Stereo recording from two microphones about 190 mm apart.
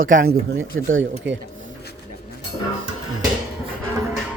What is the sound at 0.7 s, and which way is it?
Speech, 85° right.